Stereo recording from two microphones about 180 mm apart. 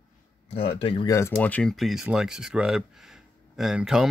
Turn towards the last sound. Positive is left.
turn(degrees=-5)  # may be behind; listen again after turning